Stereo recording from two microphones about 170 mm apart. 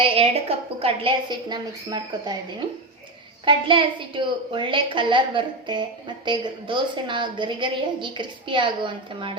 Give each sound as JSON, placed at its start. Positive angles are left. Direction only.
{"t": 0.0, "sound": "a woman's voice", "side_deg": -35}